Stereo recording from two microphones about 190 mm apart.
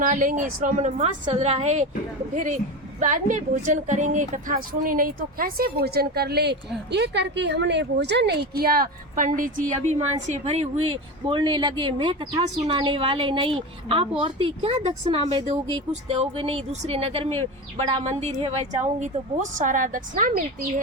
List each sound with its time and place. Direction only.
0.0 s a woman's voice: 45° right (ahead or behind)